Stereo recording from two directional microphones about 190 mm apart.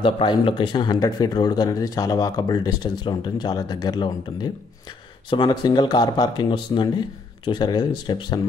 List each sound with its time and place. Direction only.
0.0 s speech: 25° left (ahead or behind)